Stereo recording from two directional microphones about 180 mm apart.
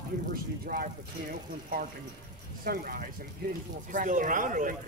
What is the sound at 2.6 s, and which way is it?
Speech, 55° right (ahead or behind).